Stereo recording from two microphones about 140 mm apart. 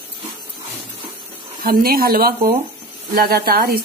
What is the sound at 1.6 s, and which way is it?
Speech, 90° right.